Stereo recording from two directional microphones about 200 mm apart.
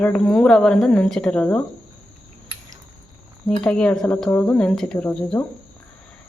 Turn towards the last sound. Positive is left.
turn(degrees=5)  # may be behind; listen again after turning